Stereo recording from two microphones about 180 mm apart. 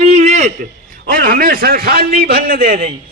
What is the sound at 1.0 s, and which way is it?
A man's voice, 50° right (ahead or behind).